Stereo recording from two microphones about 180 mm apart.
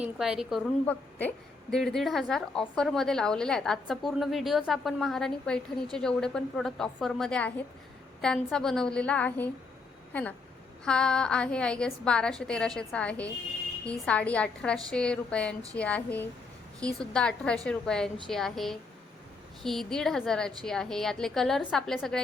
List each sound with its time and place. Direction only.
0.0 s a woman's voice: 5° right (ahead or behind)